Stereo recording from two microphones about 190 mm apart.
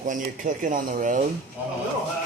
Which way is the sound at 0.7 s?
45° right (ahead or behind).